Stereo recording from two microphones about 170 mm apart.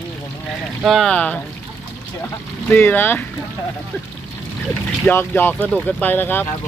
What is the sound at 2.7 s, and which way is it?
Speech, 10° left (ahead or behind).